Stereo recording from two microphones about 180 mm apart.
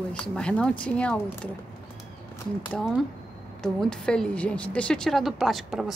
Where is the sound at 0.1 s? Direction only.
5° left (ahead or behind).